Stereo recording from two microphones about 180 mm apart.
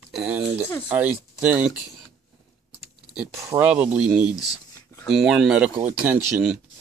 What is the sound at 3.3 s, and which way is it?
Speech, 15° right (ahead or behind).